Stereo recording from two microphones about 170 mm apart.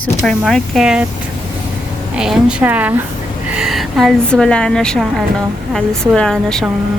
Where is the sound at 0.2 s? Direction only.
Centre (ahead or behind).